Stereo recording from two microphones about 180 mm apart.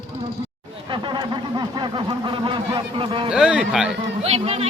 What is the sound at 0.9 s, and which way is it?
Speech, 25° right (ahead or behind).